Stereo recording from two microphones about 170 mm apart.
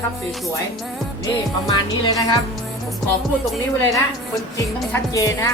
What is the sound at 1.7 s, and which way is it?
Speech, 20° left (ahead or behind).